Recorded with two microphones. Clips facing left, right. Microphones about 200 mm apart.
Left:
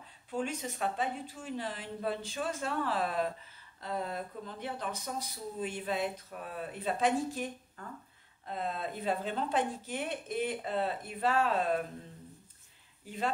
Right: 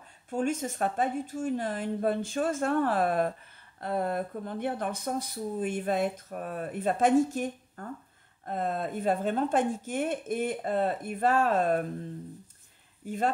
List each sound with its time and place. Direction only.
0.3 s speech: 45° right (ahead or behind)